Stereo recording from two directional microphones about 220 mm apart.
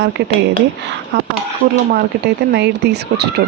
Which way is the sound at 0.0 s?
55° right (ahead or behind).